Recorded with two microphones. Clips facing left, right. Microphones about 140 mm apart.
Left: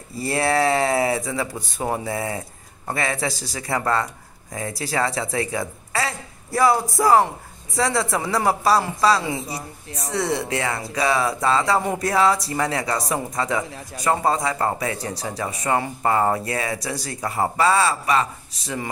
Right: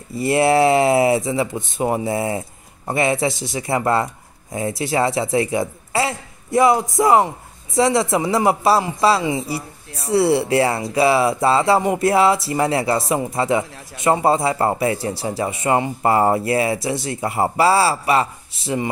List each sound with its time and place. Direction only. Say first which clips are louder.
0.2 s speech: right 6 dB; 25° right (ahead or behind)
9.3 s speech: right 5 dB; centre (ahead or behind)
10.0 s speech: right 8 dB; 30° right (ahead or behind)